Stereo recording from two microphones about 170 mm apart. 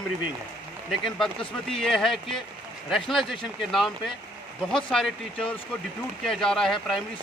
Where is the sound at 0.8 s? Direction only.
Centre (ahead or behind).